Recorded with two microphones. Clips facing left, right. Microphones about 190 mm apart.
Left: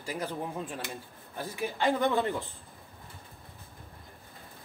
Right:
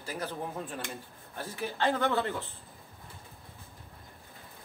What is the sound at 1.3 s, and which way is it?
Speech, 10° left (ahead or behind).